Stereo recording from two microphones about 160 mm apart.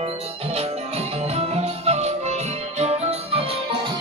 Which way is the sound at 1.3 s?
40° right (ahead or behind).